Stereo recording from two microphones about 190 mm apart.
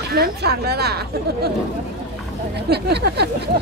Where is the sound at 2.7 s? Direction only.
60° right (ahead or behind).